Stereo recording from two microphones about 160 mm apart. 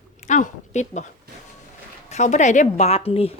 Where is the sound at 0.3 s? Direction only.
50° left (ahead or behind).